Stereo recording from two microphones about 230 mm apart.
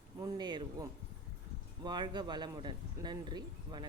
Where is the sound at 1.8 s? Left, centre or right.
Centre.